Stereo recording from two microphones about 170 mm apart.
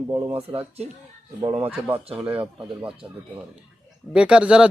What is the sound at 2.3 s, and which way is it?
Speech, 30° right (ahead or behind).